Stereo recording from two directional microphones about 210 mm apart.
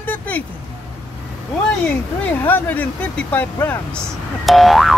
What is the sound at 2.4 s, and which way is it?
Speech, 10° left (ahead or behind).